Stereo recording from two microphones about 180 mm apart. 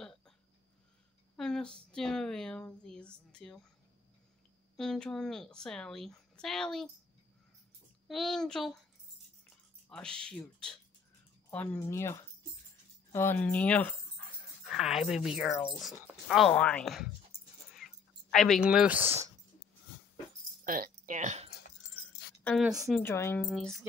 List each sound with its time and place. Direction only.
1.3 s speech: 5° left (ahead or behind)
4.7 s speech: 5° left (ahead or behind)
8.1 s speech: centre (ahead or behind)
9.8 s speech: 5° left (ahead or behind)
17.7 s a sound: centre (ahead or behind)
18.6 s speech: 5° right (ahead or behind)
20.6 s speech: 50° right (ahead or behind)
22.6 s speech: 5° right (ahead or behind)
23.0 s speech: 15° left (ahead or behind)
23.5 s speech: centre (ahead or behind)